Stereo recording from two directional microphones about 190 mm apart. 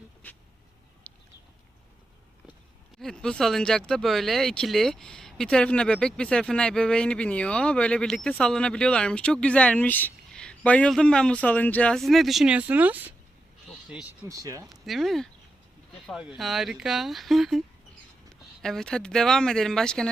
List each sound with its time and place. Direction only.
1.1 s bird: 5° left (ahead or behind)
3.0 s speech: 5° left (ahead or behind)
13.7 s a sound: 5° right (ahead or behind)
14.3 s speech: 15° right (ahead or behind)
14.7 s speech: centre (ahead or behind)
18.6 s speech: 5° left (ahead or behind)